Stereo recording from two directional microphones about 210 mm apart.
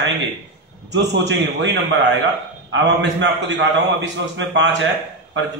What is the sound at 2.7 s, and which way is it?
A man's voice, 60° right (ahead or behind).